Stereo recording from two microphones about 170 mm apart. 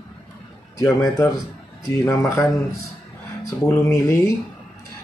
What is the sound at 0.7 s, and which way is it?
Speech, 20° left (ahead or behind).